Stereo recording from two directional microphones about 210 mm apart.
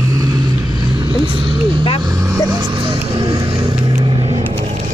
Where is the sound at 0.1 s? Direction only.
15° right (ahead or behind).